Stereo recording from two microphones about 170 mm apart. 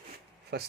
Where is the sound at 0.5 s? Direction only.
80° right.